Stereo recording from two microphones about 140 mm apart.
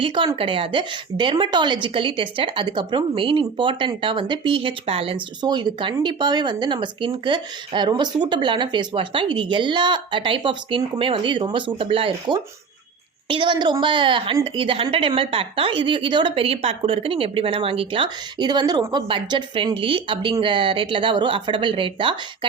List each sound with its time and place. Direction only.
0.0 s a woman's voice: 35° right (ahead or behind)